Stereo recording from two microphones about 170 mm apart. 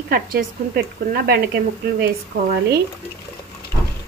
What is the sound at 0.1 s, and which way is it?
Speech, 60° right (ahead or behind).